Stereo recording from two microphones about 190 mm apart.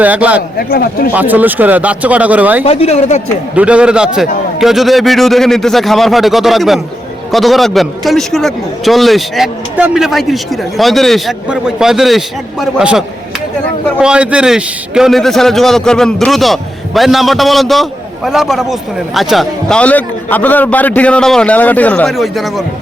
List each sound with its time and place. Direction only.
0.0 s speech: 5° right (ahead or behind)
0.7 s speech: 50° left (ahead or behind)
1.1 s speech: 10° right (ahead or behind)
2.6 s speech: 35° left (ahead or behind)
3.5 s a man's voice: 5° right (ahead or behind)